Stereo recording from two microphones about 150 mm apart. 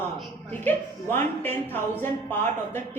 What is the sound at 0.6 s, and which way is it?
A woman's voice, 15° left (ahead or behind).